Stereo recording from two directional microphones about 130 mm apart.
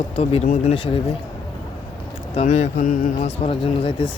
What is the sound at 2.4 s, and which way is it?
Mantra, 75° left (ahead or behind).